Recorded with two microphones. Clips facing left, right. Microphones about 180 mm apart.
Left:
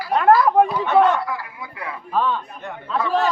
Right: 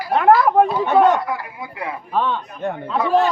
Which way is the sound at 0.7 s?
30° right (ahead or behind).